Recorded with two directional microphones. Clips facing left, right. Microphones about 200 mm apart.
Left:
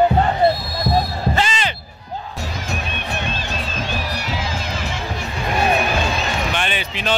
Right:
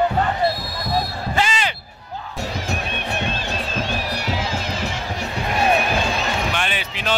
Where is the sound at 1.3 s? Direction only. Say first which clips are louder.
Right 1 dB; 10° right (ahead or behind).